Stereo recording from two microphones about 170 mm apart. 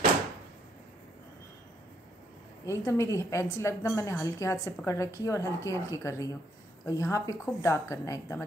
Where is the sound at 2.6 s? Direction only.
15° left (ahead or behind).